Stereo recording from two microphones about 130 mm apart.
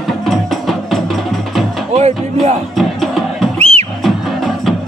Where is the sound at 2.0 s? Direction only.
55° right (ahead or behind).